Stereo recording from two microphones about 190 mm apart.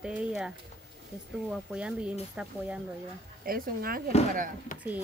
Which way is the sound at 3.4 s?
50° right (ahead or behind).